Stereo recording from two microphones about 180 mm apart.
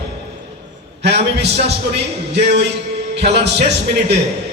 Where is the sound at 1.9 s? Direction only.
70° right (ahead or behind).